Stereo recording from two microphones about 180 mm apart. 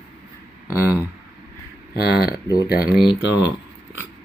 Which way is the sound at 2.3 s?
20° left (ahead or behind).